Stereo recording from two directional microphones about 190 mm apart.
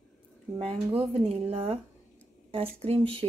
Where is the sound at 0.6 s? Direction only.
30° right (ahead or behind).